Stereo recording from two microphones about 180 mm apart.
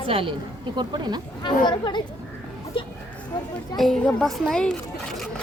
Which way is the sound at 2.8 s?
30° left (ahead or behind).